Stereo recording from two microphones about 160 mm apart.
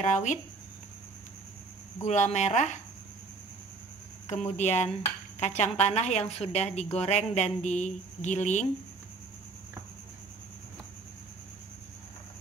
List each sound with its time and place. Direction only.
0.0 s a woman's voice: 50° left (ahead or behind)
2.0 s a woman's voice: 45° left (ahead or behind)
4.3 s a woman's voice: 45° left (ahead or behind)